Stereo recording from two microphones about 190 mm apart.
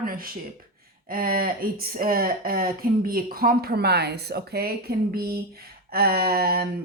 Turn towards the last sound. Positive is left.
turn(degrees=-55)  # may be behind; listen again after turning